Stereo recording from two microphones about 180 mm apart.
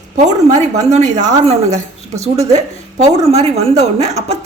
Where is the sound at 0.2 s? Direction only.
40° right (ahead or behind).